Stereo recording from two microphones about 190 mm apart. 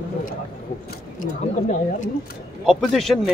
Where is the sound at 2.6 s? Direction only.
Centre (ahead or behind).